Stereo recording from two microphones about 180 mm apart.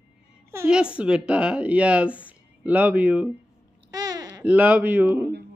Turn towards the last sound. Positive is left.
turn(degrees=-10)  # may be behind; listen again after turning